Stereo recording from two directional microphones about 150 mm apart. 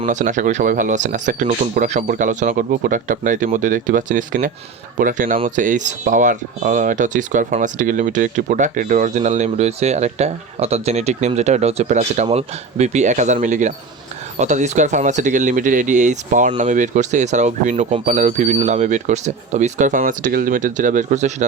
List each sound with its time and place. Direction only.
0.0 s speech: 55° right (ahead or behind)